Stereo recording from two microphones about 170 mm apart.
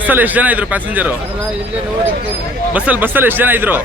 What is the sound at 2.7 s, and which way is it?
A man's voice, 10° right (ahead or behind).